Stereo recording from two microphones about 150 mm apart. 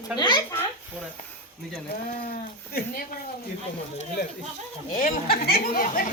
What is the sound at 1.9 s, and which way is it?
Speech, 80° left.